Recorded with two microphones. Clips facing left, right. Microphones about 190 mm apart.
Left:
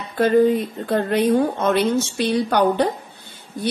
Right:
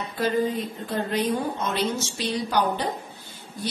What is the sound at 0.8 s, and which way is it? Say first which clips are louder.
A woman's voice: left 7 dB; 60° left (ahead or behind).